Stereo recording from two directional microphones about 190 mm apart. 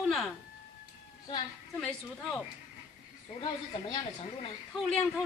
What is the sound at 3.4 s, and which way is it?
Speech, 25° left (ahead or behind).